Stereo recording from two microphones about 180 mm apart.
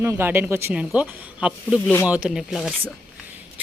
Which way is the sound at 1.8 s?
15° left (ahead or behind).